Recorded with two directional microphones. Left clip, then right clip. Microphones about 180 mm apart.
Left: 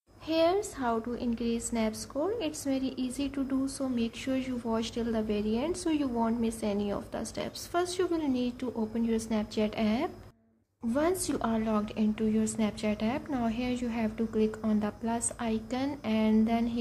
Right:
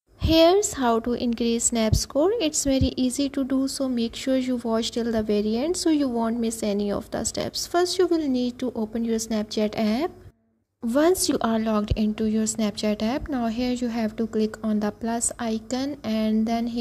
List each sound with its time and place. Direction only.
0.3 s a woman's voice: 45° right (ahead or behind)